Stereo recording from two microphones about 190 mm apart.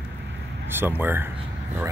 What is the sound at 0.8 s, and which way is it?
Speech, 10° right (ahead or behind).